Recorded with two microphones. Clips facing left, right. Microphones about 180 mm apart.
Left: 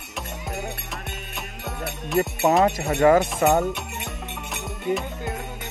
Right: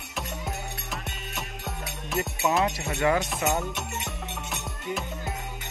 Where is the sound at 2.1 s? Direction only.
60° left (ahead or behind).